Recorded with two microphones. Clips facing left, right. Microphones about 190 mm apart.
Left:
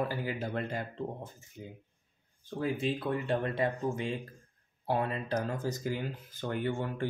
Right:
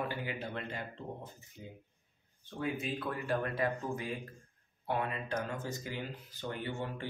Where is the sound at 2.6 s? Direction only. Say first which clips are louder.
Left 4 dB; 30° left (ahead or behind).